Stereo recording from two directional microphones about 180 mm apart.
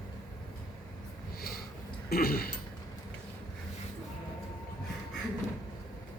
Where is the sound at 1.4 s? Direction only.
60° left (ahead or behind).